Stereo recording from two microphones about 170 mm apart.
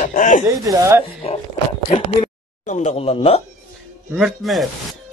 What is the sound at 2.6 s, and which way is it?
Speech, 40° left (ahead or behind).